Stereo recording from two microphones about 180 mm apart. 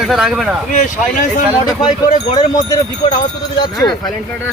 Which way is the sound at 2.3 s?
20° left (ahead or behind).